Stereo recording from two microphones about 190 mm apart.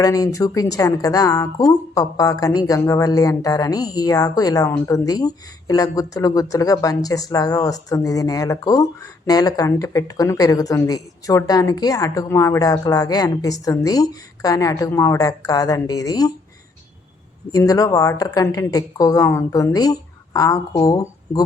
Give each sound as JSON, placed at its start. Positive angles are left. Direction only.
{"t": 0.0, "sound": "speech", "side_deg": 20}
{"t": 17.5, "sound": "speech", "side_deg": 20}